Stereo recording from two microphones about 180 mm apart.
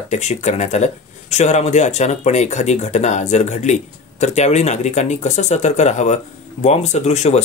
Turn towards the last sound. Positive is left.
turn(degrees=40)  # may be behind; listen again after turning